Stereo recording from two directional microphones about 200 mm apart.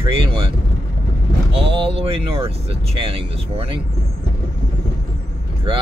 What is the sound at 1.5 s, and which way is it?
Speech, 25° right (ahead or behind).